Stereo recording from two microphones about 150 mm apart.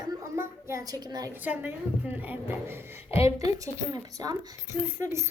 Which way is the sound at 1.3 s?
10° right (ahead or behind).